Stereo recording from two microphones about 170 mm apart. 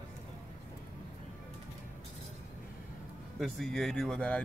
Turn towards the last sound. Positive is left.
turn(degrees=5)  # may be behind; listen again after turning